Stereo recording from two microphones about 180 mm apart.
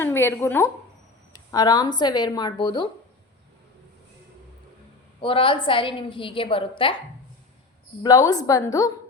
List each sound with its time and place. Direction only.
0.0 s a woman's voice: 10° left (ahead or behind)
5.2 s a woman's voice: 30° left (ahead or behind)
8.3 s a woman's voice: 20° left (ahead or behind)